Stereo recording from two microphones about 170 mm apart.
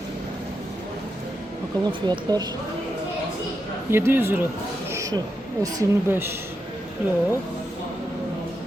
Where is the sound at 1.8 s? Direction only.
25° right (ahead or behind).